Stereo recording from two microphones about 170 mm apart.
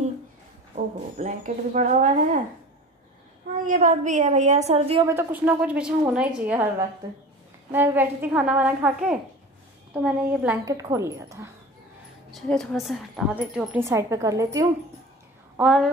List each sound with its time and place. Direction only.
1.1 s a woman's voice: 45° right (ahead or behind)
3.6 s a woman's voice: 50° right (ahead or behind)
5.0 s a woman's voice: 10° right (ahead or behind)
7.7 s a woman's voice: 10° right (ahead or behind)
10.6 s a woman's voice: 20° right (ahead or behind)
12.3 s speech: centre (ahead or behind)
13.7 s a woman's voice: 15° right (ahead or behind)
15.5 s a woman's voice: 5° right (ahead or behind)